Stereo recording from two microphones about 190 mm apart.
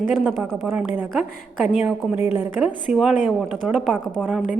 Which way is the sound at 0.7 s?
10° right (ahead or behind).